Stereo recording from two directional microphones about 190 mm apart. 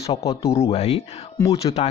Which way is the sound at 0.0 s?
30° left (ahead or behind).